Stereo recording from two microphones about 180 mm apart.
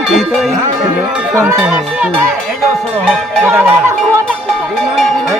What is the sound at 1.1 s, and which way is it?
Speech, 10° right (ahead or behind).